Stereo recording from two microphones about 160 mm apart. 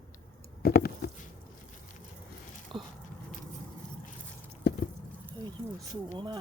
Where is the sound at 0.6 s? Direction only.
75° left (ahead or behind).